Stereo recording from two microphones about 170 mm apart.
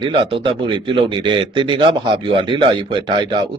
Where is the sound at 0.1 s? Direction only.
30° right (ahead or behind).